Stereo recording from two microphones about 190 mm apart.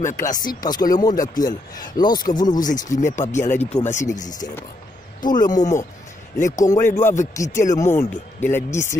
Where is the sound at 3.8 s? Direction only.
40° left (ahead or behind).